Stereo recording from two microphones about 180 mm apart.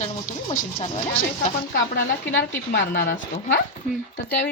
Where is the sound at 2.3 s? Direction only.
75° left (ahead or behind).